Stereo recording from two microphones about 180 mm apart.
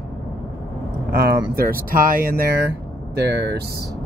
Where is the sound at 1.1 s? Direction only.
60° right (ahead or behind).